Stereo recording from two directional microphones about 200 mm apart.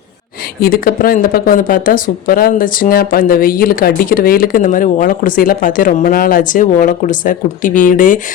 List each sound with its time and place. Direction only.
0.6 s speech: 45° left (ahead or behind)